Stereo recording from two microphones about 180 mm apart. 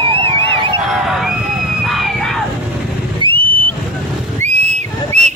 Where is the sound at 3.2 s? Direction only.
25° right (ahead or behind).